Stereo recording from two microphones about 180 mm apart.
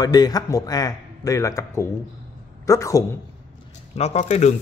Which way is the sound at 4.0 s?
40° left (ahead or behind).